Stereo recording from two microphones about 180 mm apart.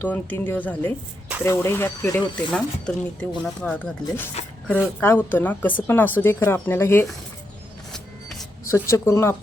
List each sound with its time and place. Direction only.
0.0 s speech: 10° left (ahead or behind)
7.9 s vehicle: centre (ahead or behind)
8.6 s speech: 15° left (ahead or behind)